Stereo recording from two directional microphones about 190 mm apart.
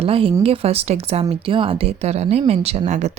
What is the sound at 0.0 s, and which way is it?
A woman's voice, 30° right (ahead or behind).